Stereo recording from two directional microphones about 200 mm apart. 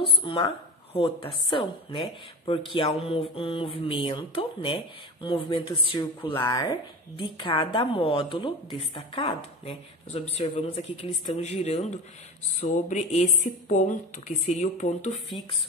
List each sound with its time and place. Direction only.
0.0 s speech: 25° left (ahead or behind)